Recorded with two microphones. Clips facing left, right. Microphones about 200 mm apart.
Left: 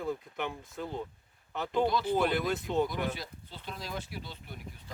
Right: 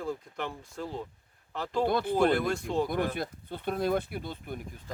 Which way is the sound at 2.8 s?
55° right (ahead or behind).